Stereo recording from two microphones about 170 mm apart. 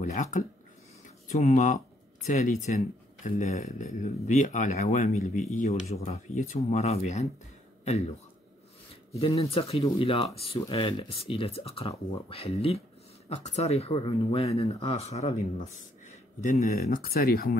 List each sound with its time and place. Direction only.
0.0 s speech: 45° left (ahead or behind)
9.2 s speech: 35° left (ahead or behind)
17.0 s speech: 60° left (ahead or behind)